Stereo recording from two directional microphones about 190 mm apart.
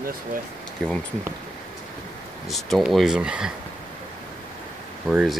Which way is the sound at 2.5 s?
Centre (ahead or behind).